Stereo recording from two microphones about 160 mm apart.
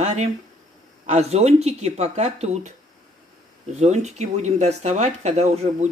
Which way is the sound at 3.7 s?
45° right (ahead or behind).